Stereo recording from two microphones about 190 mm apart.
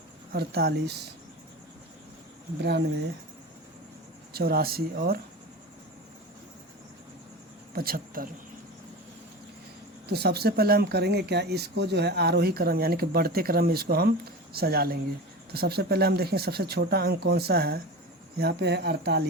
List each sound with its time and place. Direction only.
0.3 s speech: 55° right (ahead or behind)
2.6 s speech: 60° right (ahead or behind)
4.4 s speech: 55° right (ahead or behind)
7.7 s speech: 50° right (ahead or behind)
10.1 s speech: 60° right (ahead or behind)